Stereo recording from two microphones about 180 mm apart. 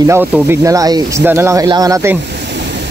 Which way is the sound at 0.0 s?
10° right (ahead or behind).